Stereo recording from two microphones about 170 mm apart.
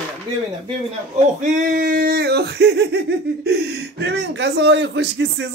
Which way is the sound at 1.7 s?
55° right (ahead or behind).